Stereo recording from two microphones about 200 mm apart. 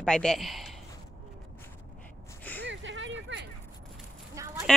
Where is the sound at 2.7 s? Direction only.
65° right (ahead or behind).